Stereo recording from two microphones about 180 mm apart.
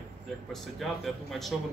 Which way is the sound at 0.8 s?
Centre (ahead or behind).